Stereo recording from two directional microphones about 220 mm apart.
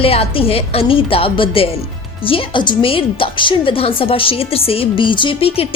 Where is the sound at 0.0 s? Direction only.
25° left (ahead or behind).